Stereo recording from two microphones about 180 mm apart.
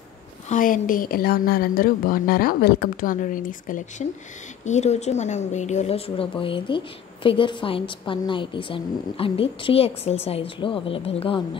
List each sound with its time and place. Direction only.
0.5 s a woman's voice: 50° left (ahead or behind); by 11.4 s 30° left (ahead or behind)